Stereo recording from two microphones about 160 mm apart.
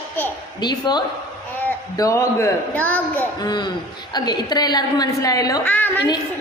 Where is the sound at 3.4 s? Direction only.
25° left (ahead or behind).